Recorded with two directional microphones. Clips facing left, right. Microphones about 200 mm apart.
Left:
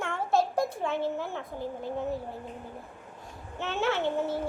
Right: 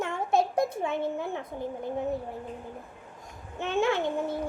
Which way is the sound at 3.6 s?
15° right (ahead or behind).